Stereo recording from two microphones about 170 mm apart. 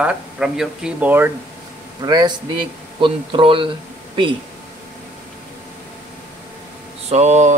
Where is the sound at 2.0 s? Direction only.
25° right (ahead or behind).